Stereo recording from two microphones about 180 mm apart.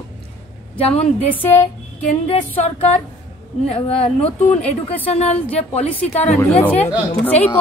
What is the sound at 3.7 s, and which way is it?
A woman's voice, 30° left (ahead or behind).